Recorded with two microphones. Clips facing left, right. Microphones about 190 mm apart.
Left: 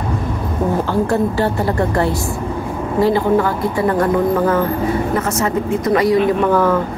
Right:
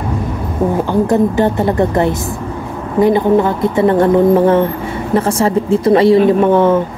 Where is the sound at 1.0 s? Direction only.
20° right (ahead or behind).